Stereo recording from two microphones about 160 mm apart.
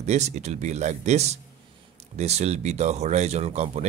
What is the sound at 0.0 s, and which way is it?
Speech, 45° right (ahead or behind).